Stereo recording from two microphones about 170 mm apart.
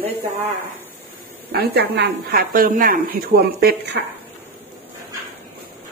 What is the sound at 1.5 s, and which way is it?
A woman's voice, 70° right (ahead or behind).